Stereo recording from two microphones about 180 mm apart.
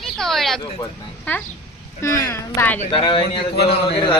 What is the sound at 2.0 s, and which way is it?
Speech, 15° left (ahead or behind).